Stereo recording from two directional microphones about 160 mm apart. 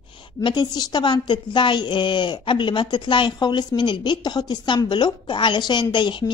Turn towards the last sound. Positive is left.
turn(degrees=30)  # may be behind; listen again after turning